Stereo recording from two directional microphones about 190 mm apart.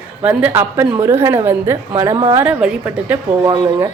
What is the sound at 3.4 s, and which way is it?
Speech, 25° right (ahead or behind).